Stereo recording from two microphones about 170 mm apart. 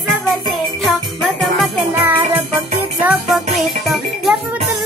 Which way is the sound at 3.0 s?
5° right (ahead or behind).